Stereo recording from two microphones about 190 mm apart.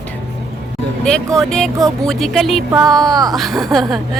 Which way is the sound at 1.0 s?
5° left (ahead or behind).